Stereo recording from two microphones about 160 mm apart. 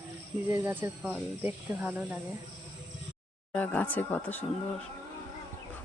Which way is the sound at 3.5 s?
10° left (ahead or behind).